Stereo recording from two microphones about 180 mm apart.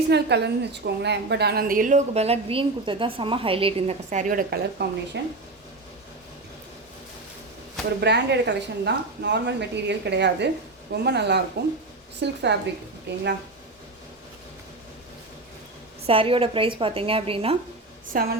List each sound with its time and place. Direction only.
0.1 s a woman's voice: 70° right (ahead or behind); by 4.9 s 50° right (ahead or behind)
5.2 s speech: 75° right (ahead or behind)
8.0 s speech: 70° right (ahead or behind)
16.0 s a woman's voice: 30° right (ahead or behind)
18.1 s a woman's voice: 50° right (ahead or behind)